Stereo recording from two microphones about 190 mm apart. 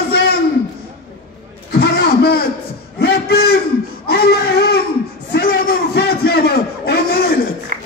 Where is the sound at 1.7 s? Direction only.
55° left (ahead or behind).